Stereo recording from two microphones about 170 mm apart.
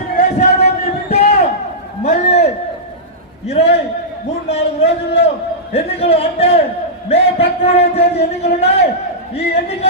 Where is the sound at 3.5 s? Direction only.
40° left (ahead or behind).